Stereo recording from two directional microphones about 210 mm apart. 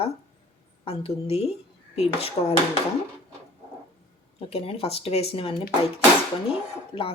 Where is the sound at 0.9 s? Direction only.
30° left (ahead or behind).